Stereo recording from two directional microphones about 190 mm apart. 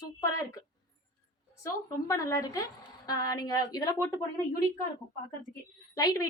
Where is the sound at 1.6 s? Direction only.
15° left (ahead or behind).